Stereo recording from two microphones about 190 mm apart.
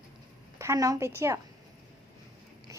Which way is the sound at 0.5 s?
15° right (ahead or behind).